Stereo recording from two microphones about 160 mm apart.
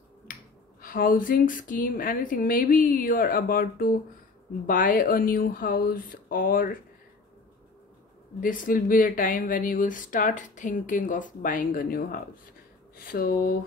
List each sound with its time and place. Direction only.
0.3 s finger snapping: 60° left (ahead or behind)
0.7 s speech: 65° left (ahead or behind)
8.4 s speech: 60° left (ahead or behind)